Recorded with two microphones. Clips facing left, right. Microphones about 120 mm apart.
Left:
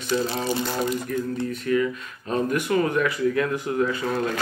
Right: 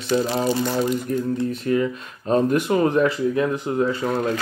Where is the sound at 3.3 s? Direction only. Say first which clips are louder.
Right 2 dB; 20° right (ahead or behind).